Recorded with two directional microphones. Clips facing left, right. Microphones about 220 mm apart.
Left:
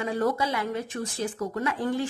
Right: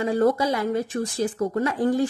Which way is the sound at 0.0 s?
35° right (ahead or behind).